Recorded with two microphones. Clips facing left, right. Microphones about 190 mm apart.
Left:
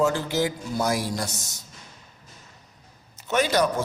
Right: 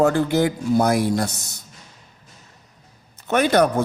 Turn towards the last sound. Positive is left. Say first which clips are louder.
# right 5 dB
turn(degrees=-60)  # may be behind; listen again after turning